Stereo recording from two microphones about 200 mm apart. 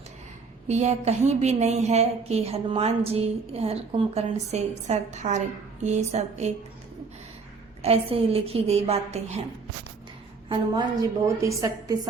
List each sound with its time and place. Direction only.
0.7 s a woman's voice: 35° right (ahead or behind)
7.8 s a woman's voice: 30° right (ahead or behind)
10.5 s a woman's voice: 20° right (ahead or behind)